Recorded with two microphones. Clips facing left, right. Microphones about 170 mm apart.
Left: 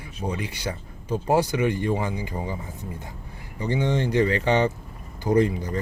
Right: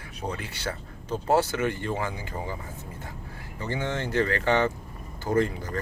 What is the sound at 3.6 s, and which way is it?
Speech, 15° left (ahead or behind).